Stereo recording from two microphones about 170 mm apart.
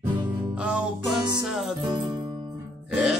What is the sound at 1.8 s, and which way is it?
Music, 25° right (ahead or behind).